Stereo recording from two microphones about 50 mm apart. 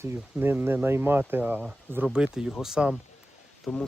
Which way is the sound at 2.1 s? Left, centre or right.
Centre.